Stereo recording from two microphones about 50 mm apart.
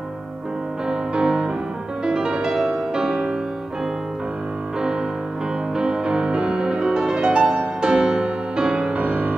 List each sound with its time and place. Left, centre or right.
0.8 s music: centre
5.8 s music: centre